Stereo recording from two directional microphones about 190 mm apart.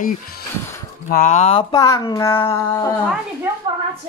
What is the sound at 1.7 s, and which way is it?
Speech, 15° left (ahead or behind).